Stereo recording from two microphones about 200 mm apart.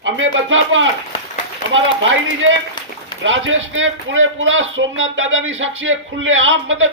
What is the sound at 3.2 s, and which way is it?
A man's voice, 70° right (ahead or behind).